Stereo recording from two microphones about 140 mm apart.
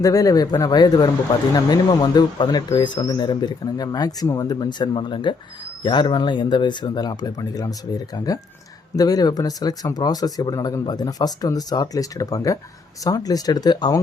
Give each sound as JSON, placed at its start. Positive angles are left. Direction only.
{"t": 0.0, "sound": "speech", "side_deg": 25}